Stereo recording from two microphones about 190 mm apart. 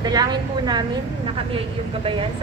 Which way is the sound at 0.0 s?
20° right (ahead or behind).